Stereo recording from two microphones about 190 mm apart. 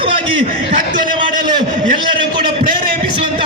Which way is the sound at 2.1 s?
25° right (ahead or behind).